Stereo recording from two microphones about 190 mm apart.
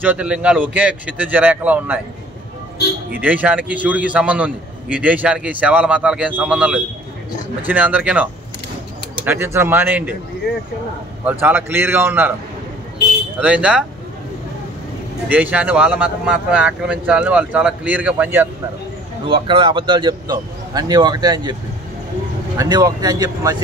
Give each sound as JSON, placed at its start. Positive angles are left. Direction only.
{"t": 0.0, "sound": "a man's voice", "side_deg": -5}
{"t": 3.1, "sound": "a man's voice", "side_deg": -10}
{"t": 11.2, "sound": "a man's voice", "side_deg": -10}
{"t": 13.4, "sound": "speech", "side_deg": -5}
{"t": 15.2, "sound": "a man's voice", "side_deg": -10}
{"t": 19.2, "sound": "speech", "side_deg": -25}
{"t": 22.6, "sound": "speech", "side_deg": -20}